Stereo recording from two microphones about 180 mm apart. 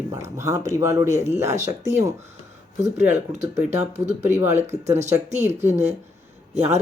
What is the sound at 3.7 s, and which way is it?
Speech, 40° right (ahead or behind).